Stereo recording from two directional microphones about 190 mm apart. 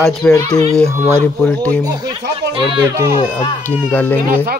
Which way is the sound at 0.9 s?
15° right (ahead or behind).